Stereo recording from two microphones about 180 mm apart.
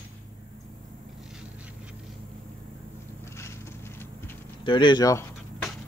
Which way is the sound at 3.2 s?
15° left (ahead or behind).